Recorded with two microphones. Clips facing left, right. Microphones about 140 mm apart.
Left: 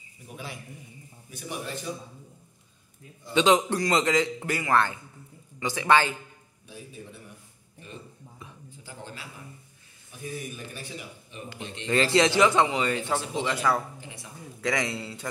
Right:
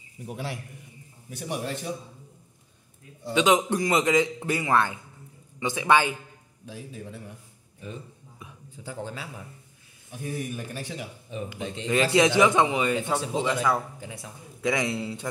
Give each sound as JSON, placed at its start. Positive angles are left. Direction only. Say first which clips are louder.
{"t": 0.3, "sound": "a man's voice", "louder": "right 5 dB", "side_deg": -75}
{"t": 3.3, "sound": "a man's voice", "louder": "even", "side_deg": -10}
{"t": 6.6, "sound": "a man's voice", "louder": "right 4 dB", "side_deg": -90}
{"t": 10.1, "sound": "a man's voice", "louder": "right 4 dB", "side_deg": -60}
{"t": 11.4, "sound": "a man's voice", "louder": "right 2 dB", "side_deg": -10}
{"t": 14.6, "sound": "a man's voice", "louder": "right 2 dB", "side_deg": -20}